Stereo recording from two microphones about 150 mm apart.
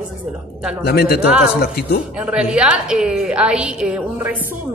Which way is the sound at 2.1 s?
5° right (ahead or behind).